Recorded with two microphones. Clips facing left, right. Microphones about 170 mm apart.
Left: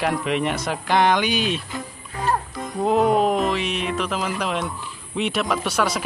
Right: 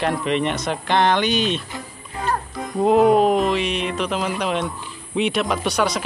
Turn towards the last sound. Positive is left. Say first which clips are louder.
# right 1 dB
turn(degrees=5)  # may be behind; listen again after turning